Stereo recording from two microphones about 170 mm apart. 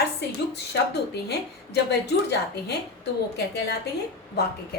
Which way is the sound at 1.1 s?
75° left (ahead or behind).